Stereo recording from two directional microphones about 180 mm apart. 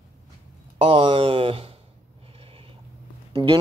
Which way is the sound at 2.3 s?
30° right (ahead or behind).